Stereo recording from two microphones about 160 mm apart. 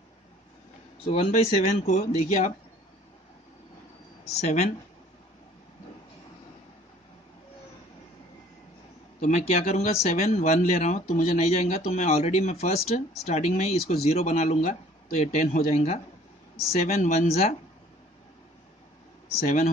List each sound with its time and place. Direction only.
1.0 s speech: 40° left (ahead or behind)
1.9 s speech: 50° left (ahead or behind)
4.2 s speech: 45° left (ahead or behind)
9.2 s speech: 45° left (ahead or behind)
19.4 s speech: 50° left (ahead or behind)